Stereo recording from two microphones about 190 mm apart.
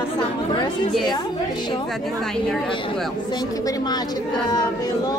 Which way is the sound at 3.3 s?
20° left (ahead or behind).